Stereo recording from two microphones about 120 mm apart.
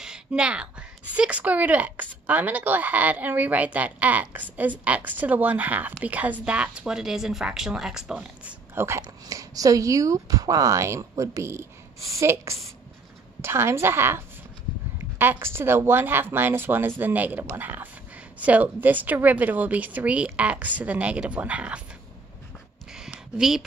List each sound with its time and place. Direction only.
0.0 s a woman's voice: 10° right (ahead or behind)
8.7 s a woman's voice: 20° right (ahead or behind)
22.9 s a sound: 5° right (ahead or behind)